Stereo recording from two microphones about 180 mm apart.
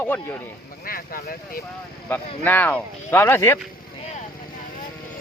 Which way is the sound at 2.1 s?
10° left (ahead or behind).